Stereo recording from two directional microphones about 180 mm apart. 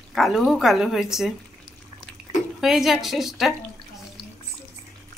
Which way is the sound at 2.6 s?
Centre (ahead or behind).